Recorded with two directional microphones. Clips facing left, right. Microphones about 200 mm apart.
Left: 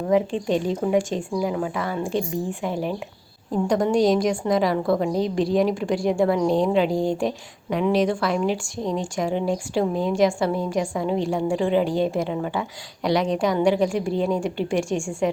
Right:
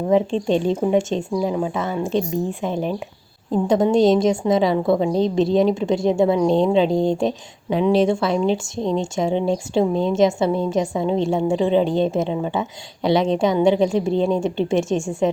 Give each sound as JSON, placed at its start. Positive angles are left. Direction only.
{"t": 0.1, "sound": "a woman's voice", "side_deg": -25}